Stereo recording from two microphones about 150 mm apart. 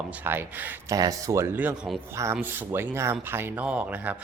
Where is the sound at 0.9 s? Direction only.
25° right (ahead or behind).